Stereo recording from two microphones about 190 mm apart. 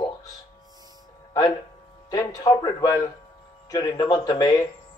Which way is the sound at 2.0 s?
20° left (ahead or behind).